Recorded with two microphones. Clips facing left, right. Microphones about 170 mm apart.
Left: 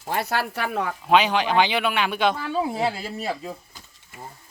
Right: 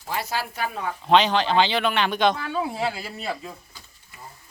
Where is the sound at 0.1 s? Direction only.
60° left (ahead or behind).